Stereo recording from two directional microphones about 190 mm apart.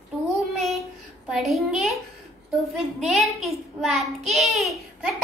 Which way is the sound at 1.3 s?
Centre (ahead or behind).